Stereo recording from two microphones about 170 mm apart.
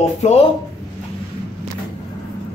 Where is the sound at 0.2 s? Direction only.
40° left (ahead or behind).